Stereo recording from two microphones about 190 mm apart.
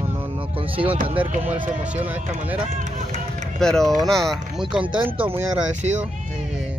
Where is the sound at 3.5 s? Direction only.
Centre (ahead or behind).